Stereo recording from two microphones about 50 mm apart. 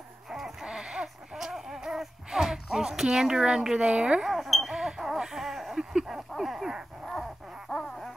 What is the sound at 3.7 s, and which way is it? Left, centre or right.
Speech, right.